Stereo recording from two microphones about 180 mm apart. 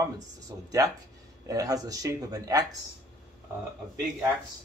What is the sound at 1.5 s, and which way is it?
Speech, 20° right (ahead or behind).